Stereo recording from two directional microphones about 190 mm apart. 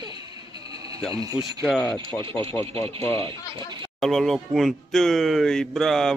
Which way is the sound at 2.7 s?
30° right (ahead or behind).